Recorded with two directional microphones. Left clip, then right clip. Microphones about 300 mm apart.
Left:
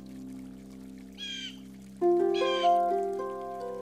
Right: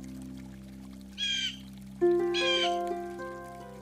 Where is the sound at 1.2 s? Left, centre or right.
Centre.